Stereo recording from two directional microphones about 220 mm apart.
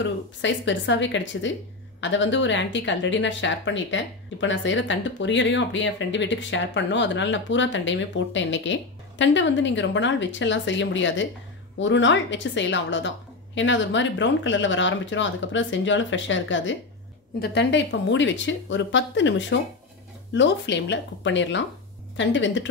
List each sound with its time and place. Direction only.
0.0 s speech: 55° left (ahead or behind)